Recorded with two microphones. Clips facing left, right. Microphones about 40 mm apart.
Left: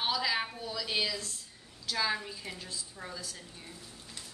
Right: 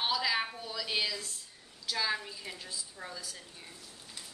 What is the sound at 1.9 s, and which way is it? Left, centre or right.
A woman's voice, centre.